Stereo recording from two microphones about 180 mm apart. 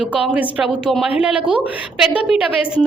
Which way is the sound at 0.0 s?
5° right (ahead or behind).